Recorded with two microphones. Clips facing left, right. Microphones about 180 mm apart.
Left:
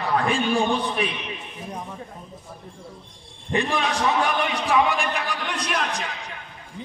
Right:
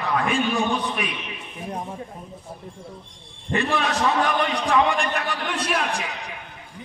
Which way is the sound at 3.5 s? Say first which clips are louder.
Right 1 dB; 15° left (ahead or behind).